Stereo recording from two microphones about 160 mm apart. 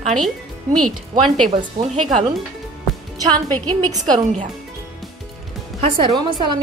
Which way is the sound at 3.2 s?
25° right (ahead or behind).